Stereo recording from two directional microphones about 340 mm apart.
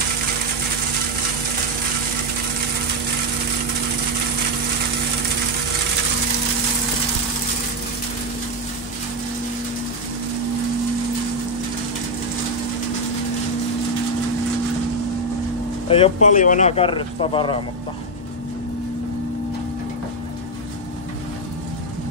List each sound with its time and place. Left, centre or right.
15.9 s speech: centre